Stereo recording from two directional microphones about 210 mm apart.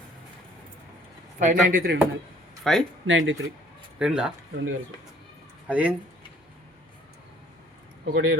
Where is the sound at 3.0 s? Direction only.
65° right (ahead or behind).